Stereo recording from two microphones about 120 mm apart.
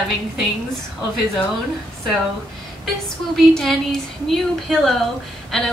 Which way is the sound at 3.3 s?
5° left (ahead or behind).